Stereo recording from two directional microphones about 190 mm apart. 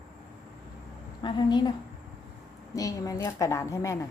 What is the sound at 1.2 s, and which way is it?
Speech, 25° left (ahead or behind).